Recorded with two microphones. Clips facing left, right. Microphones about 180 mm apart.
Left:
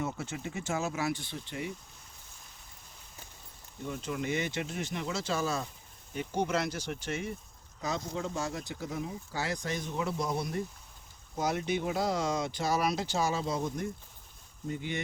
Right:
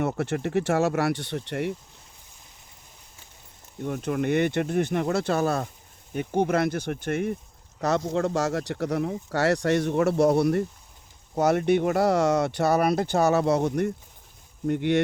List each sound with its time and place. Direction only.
0.0 s speech: 65° right (ahead or behind)
3.8 s speech: 60° right (ahead or behind)
7.8 s speech: 70° right (ahead or behind)